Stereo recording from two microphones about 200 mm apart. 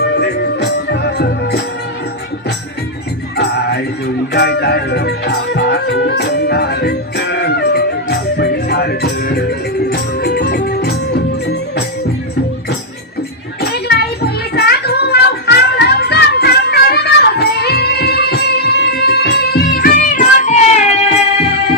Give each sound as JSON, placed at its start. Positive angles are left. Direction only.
{"t": 0.2, "sound": "music", "side_deg": 55}
{"t": 3.3, "sound": "music", "side_deg": 55}
{"t": 13.6, "sound": "a sound", "side_deg": 55}
{"t": 14.5, "sound": "music", "side_deg": 50}